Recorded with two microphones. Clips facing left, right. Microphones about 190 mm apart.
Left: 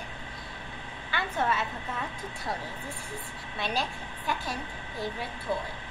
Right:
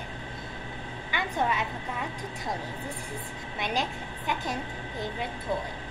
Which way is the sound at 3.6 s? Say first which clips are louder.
Right 1 dB; 20° right (ahead or behind).